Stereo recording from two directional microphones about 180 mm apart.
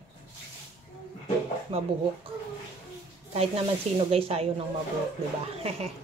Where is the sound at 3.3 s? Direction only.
35° right (ahead or behind).